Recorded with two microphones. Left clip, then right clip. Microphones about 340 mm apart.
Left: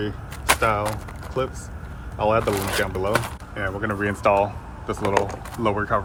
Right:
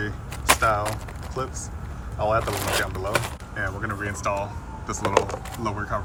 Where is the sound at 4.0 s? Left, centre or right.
Centre.